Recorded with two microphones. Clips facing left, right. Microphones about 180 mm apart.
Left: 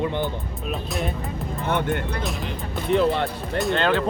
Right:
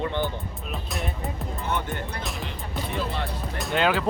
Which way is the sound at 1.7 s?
60° left (ahead or behind).